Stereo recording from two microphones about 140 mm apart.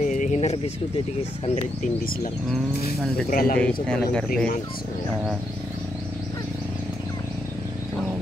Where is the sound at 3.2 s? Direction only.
90° left.